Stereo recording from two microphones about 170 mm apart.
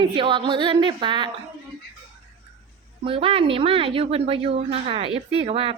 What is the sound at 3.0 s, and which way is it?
A woman's voice, 30° right (ahead or behind).